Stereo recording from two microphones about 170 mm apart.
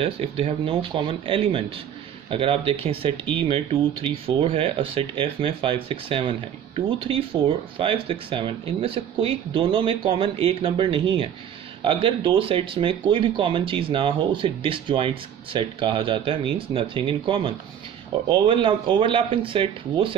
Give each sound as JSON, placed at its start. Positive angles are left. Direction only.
{"t": 0.0, "sound": "speech", "side_deg": -35}